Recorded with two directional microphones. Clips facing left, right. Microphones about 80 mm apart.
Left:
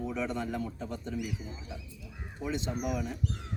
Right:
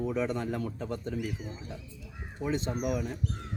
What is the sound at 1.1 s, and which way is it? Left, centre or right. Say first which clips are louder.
Speech: right 1 dB; right.